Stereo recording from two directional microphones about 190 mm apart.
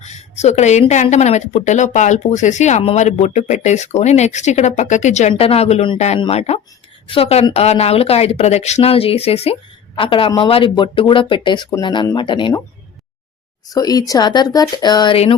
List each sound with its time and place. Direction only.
0.0 s speech: 35° left (ahead or behind)
13.7 s speech: 20° left (ahead or behind)